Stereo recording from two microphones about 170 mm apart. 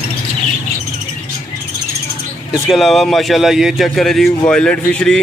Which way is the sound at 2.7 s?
Centre (ahead or behind).